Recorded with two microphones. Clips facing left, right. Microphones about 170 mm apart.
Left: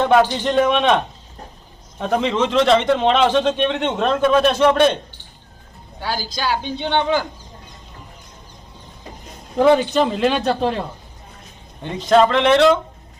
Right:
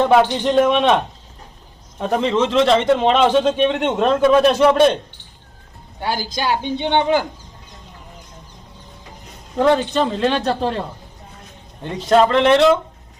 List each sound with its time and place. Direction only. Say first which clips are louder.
0.0 s a man's voice: right 1 dB; centre (ahead or behind)
6.0 s a woman's voice: right 2 dB; 20° right (ahead or behind)
9.6 s a man's voice: left 2 dB; 5° left (ahead or behind)